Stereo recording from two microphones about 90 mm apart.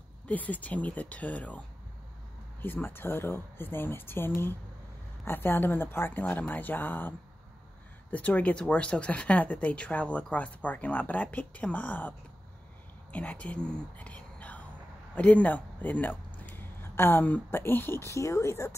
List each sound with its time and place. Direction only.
0.3 s speech: 15° left (ahead or behind)
2.6 s speech: 25° left (ahead or behind)
18.1 s speech: 35° left (ahead or behind)